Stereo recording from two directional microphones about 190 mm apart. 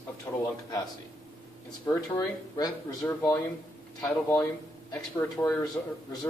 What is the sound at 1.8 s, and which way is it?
Speech, 20° left (ahead or behind).